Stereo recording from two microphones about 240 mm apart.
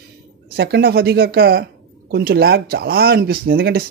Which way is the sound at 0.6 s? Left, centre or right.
Right.